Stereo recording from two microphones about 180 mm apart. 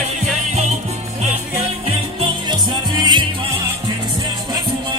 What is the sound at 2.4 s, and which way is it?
Music, 25° right (ahead or behind).